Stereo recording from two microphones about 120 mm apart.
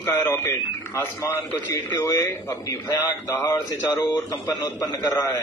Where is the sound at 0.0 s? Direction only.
20° left (ahead or behind).